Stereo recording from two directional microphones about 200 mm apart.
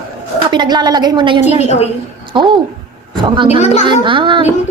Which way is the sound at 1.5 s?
35° left (ahead or behind).